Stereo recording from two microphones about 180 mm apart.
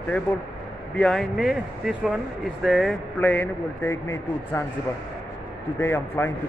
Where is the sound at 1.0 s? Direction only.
Centre (ahead or behind).